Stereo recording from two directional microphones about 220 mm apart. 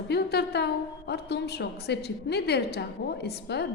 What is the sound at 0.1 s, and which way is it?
A woman's voice, 45° left (ahead or behind).